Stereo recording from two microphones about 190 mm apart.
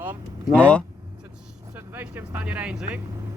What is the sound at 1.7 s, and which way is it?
Speech, 10° right (ahead or behind).